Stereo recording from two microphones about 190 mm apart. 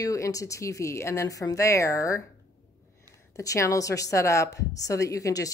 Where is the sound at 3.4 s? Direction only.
15° left (ahead or behind).